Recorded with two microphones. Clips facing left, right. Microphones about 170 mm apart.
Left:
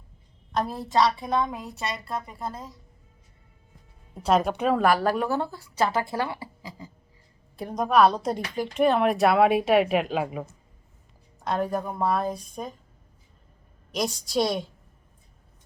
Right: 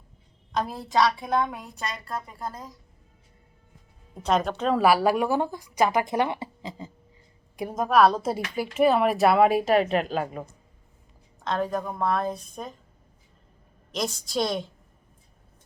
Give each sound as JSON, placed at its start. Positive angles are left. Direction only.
{"t": 0.5, "sound": "a woman's voice", "side_deg": 0}
{"t": 4.1, "sound": "a woman's voice", "side_deg": 5}
{"t": 4.8, "sound": "speech", "side_deg": -10}
{"t": 7.5, "sound": "a woman's voice", "side_deg": -10}
{"t": 13.9, "sound": "a woman's voice", "side_deg": 10}